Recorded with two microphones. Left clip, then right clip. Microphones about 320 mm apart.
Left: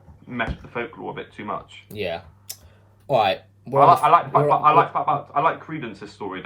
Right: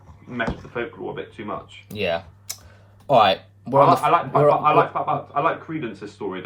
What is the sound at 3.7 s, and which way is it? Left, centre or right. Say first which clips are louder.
Speech: left 1 dB; centre.